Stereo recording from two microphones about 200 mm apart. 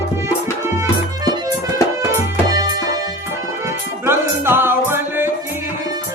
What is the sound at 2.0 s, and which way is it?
Music, 15° right (ahead or behind).